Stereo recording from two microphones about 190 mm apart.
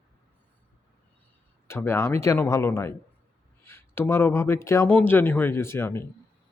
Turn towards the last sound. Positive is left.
turn(degrees=10)  # may be behind; listen again after turning